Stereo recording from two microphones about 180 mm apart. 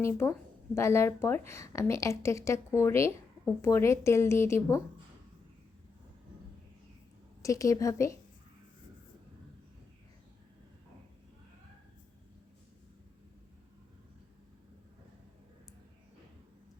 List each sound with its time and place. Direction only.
0.0 s speech: 15° left (ahead or behind)
7.4 s speech: 20° left (ahead or behind)